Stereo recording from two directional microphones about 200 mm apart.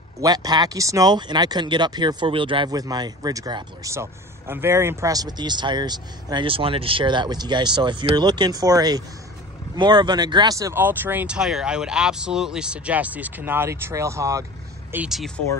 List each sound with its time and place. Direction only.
0.2 s speech: 20° right (ahead or behind); by 15.4 s centre (ahead or behind)